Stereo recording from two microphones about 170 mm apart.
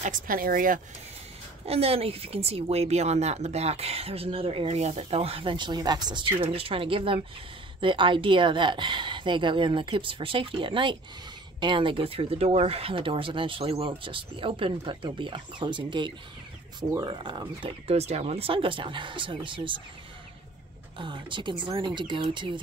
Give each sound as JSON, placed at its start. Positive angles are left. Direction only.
{"t": 0.0, "sound": "speech", "side_deg": -50}
{"t": 1.7, "sound": "a woman's voice", "side_deg": -35}
{"t": 21.0, "sound": "speech", "side_deg": -30}